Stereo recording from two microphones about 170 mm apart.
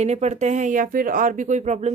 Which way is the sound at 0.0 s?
40° right (ahead or behind).